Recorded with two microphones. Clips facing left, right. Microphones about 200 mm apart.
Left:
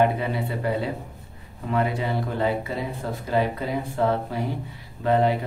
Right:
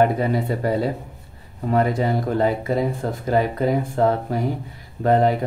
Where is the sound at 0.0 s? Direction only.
40° right (ahead or behind).